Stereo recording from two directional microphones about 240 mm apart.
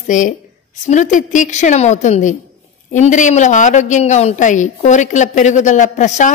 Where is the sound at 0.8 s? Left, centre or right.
Left.